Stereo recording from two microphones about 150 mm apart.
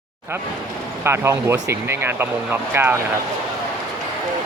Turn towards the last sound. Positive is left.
turn(degrees=-15)  # may be behind; listen again after turning